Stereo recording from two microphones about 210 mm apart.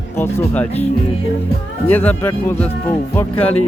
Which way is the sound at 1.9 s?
10° left (ahead or behind).